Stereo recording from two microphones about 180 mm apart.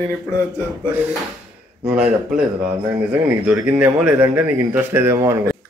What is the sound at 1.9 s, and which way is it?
Speech, 5° right (ahead or behind).